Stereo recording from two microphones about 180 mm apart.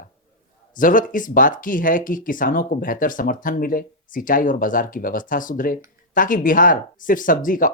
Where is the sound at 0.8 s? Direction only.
50° left (ahead or behind).